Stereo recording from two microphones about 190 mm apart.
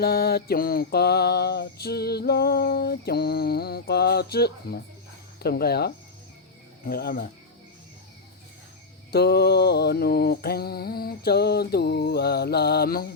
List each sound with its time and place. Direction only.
0.0 s mantra: 55° left (ahead or behind)
6.8 s speech: 50° left (ahead or behind)
9.1 s mantra: 60° left (ahead or behind)